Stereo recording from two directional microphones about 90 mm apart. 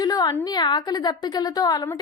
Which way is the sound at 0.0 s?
45° left (ahead or behind).